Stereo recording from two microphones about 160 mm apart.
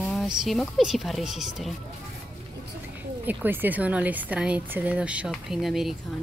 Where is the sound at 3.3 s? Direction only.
10° right (ahead or behind).